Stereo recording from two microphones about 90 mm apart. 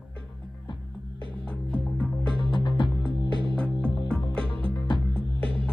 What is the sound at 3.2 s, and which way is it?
Music, 70° right (ahead or behind).